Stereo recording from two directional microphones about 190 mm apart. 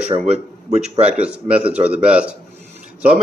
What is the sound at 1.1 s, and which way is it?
Speech, 5° right (ahead or behind).